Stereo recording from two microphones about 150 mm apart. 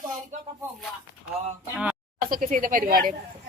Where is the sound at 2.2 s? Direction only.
70° right (ahead or behind).